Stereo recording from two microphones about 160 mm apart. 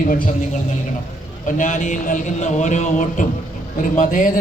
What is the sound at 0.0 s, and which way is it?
Speech, 60° left (ahead or behind).